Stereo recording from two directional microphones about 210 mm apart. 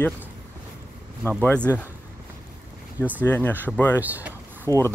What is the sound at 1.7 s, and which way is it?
Speech, 15° left (ahead or behind).